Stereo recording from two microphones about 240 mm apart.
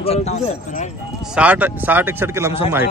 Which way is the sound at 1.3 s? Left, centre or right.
Centre.